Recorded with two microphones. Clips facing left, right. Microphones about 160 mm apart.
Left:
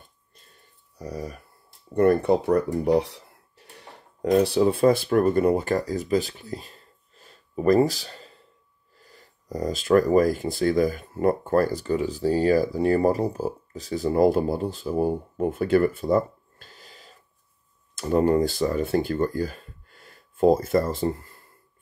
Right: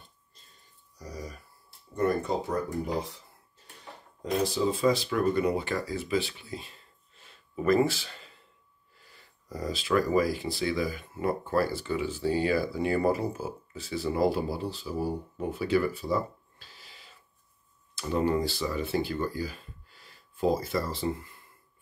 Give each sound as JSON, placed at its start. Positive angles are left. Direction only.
{"t": 0.9, "sound": "speech", "side_deg": 60}